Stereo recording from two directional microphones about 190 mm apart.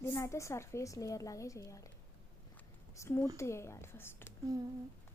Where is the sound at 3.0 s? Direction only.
15° left (ahead or behind).